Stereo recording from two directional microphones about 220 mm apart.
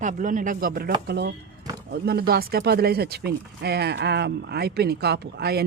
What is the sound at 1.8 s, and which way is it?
Speech, 45° right (ahead or behind).